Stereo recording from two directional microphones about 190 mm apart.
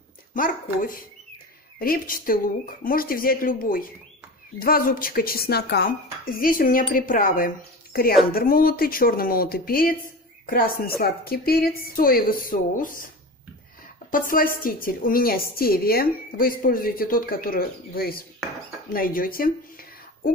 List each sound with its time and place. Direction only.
0.3 s a woman's voice: 45° left (ahead or behind)
14.1 s a woman's voice: 50° left (ahead or behind)